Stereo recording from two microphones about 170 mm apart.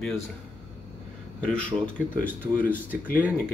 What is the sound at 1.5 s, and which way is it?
Speech, 5° left (ahead or behind).